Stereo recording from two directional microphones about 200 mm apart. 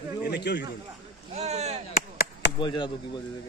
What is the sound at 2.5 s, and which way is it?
Speech, 25° left (ahead or behind).